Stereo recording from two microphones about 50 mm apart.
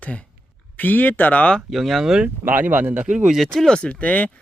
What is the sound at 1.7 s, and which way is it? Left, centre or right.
Speech, centre.